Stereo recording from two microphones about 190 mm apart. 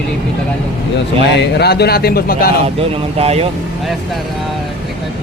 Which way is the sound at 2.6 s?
30° right (ahead or behind).